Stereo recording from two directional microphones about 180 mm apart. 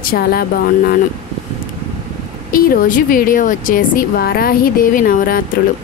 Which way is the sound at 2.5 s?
50° left (ahead or behind).